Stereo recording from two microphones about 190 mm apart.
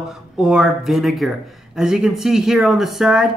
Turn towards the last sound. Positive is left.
turn(degrees=0)  # may be behind; listen again after turning